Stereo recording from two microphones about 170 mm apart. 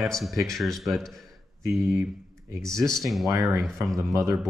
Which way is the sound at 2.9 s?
Centre (ahead or behind).